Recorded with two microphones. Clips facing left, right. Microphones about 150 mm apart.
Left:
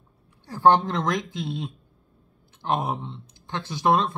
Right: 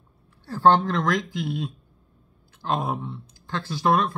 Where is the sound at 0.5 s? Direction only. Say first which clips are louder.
Even; 15° left (ahead or behind).